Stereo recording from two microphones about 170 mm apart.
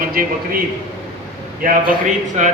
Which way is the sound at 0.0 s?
60° right (ahead or behind).